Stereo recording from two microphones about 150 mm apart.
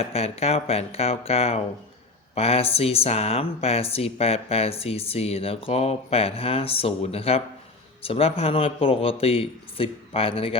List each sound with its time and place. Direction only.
0.0 s speech: 45° left (ahead or behind)